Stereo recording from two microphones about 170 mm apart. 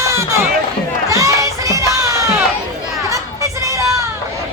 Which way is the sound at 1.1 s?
20° right (ahead or behind).